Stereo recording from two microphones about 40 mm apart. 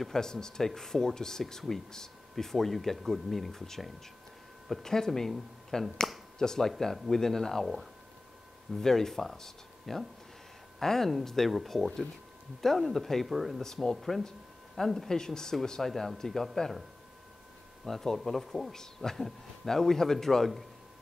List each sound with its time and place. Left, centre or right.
0.0 s a man's voice: centre
7.6 s speech: centre
8.7 s a man's voice: centre
13.6 s a man's voice: centre
17.8 s a man's voice: centre